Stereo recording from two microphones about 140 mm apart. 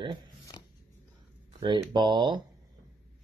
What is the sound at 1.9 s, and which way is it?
Speech, 35° right (ahead or behind).